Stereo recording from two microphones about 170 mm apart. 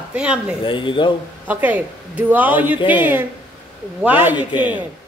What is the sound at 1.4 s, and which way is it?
Speech, 10° right (ahead or behind).